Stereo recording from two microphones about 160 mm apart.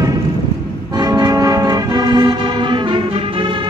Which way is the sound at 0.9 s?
25° right (ahead or behind).